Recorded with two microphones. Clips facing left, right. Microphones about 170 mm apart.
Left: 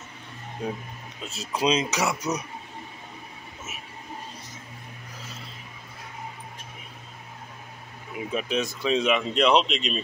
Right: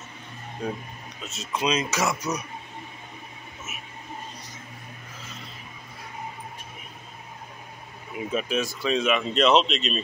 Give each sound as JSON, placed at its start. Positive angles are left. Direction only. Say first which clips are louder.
{"t": 0.6, "sound": "speech", "louder": "even", "side_deg": 20}
{"t": 1.3, "sound": "speech", "louder": "left 2 dB", "side_deg": 35}
{"t": 1.9, "sound": "speech", "louder": "even", "side_deg": 15}
{"t": 8.3, "sound": "speech", "louder": "right 1 dB", "side_deg": 20}